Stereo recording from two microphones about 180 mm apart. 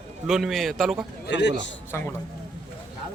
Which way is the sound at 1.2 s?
80° left.